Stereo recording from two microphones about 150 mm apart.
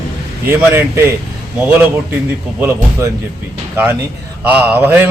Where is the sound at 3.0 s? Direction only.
20° right (ahead or behind).